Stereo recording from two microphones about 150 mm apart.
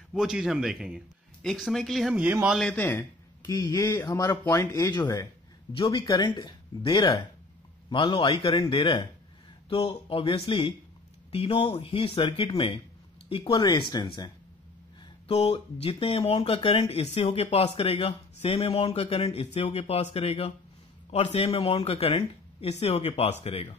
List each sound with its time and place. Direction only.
0.1 s speech: 5° right (ahead or behind)
2.7 s a man's voice: 10° left (ahead or behind)
3.4 s speech: 25° left (ahead or behind)
15.2 s speech: 40° left (ahead or behind)